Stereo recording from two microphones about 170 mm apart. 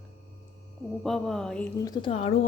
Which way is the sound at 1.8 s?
20° left (ahead or behind).